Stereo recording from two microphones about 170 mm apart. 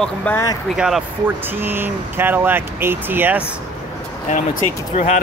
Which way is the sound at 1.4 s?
10° right (ahead or behind).